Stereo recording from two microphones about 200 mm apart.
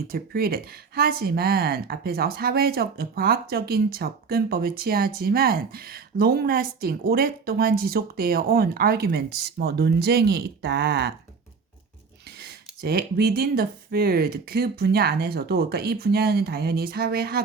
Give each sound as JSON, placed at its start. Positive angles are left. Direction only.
{"t": 0.1, "sound": "speech", "side_deg": -45}
{"t": 12.4, "sound": "speech", "side_deg": -50}